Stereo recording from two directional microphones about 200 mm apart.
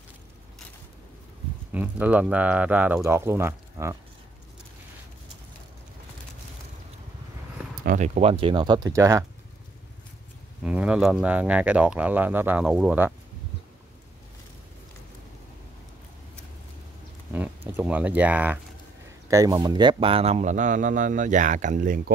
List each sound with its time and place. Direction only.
1.7 s speech: 10° right (ahead or behind)
7.8 s speech: 40° right (ahead or behind); by 9.2 s 15° right (ahead or behind)
10.6 s speech: 5° right (ahead or behind)
17.3 s a sound: 10° right (ahead or behind)
19.2 s speech: 15° right (ahead or behind); by 22.1 s 45° right (ahead or behind)